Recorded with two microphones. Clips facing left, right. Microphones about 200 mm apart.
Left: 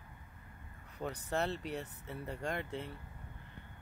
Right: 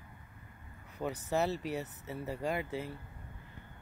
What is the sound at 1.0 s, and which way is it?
Speech, 5° right (ahead or behind).